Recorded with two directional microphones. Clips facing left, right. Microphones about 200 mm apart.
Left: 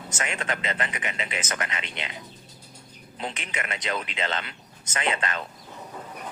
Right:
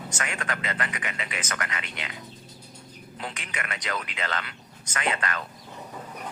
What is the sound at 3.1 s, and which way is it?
A man's voice, 25° left (ahead or behind).